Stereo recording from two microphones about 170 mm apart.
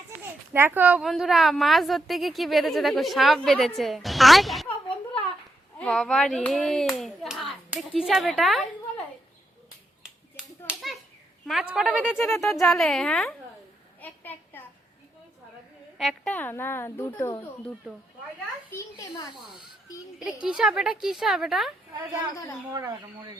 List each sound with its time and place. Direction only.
0.2 s a woman's voice: 10° right (ahead or behind)
5.8 s a woman's voice: 5° left (ahead or behind)
10.7 s a sound: centre (ahead or behind)
11.4 s a woman's voice: 5° right (ahead or behind)
14.0 s a sound: 10° left (ahead or behind)
16.0 s a woman's voice: 5° left (ahead or behind)
19.1 s speech: 25° left (ahead or behind)
20.1 s a woman's voice: 5° right (ahead or behind)
22.7 s speech: 20° right (ahead or behind)